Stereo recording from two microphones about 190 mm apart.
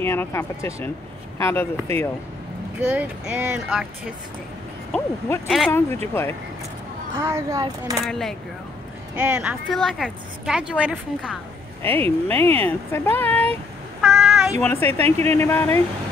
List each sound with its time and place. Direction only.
0.0 s speech: 10° left (ahead or behind)
2.8 s a woman's voice: 5° right (ahead or behind)
5.7 s speech: 15° left (ahead or behind)
7.2 s speech: 15° right (ahead or behind)
8.0 s a woman's voice: centre (ahead or behind)
12.3 s speech: 10° left (ahead or behind)
14.0 s child singing: centre (ahead or behind)
14.6 s speech: 10° left (ahead or behind)